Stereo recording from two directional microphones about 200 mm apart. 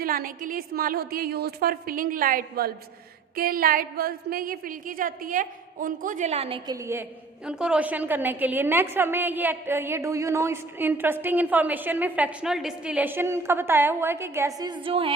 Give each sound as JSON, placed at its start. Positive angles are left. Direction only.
{"t": 0.0, "sound": "a woman's voice", "side_deg": -45}
{"t": 6.7, "sound": "a woman's voice", "side_deg": -15}
{"t": 7.4, "sound": "a woman's voice", "side_deg": -5}